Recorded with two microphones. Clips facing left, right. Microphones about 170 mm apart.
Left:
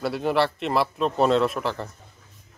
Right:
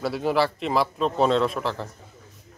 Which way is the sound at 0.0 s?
Centre (ahead or behind).